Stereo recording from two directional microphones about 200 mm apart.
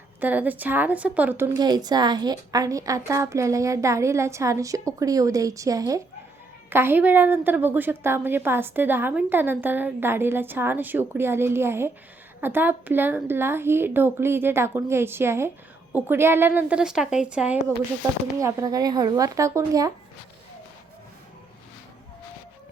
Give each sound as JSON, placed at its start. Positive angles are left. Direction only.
{"t": 0.2, "sound": "a woman's voice", "side_deg": -10}